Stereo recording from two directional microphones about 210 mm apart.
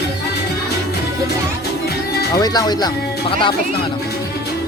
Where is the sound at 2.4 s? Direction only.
20° left (ahead or behind).